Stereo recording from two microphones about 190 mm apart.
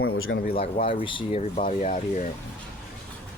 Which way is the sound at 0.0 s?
90° left.